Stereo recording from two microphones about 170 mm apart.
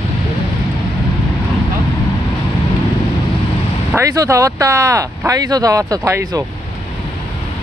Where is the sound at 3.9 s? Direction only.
20° right (ahead or behind).